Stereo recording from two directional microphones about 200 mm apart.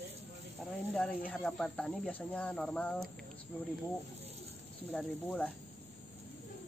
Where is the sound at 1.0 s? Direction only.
5° left (ahead or behind).